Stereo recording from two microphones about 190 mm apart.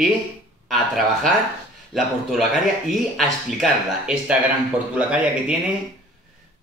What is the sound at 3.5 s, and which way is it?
Speech, 5° right (ahead or behind).